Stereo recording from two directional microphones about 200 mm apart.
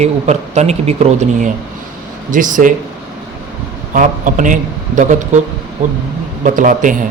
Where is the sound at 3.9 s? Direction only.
40° right (ahead or behind).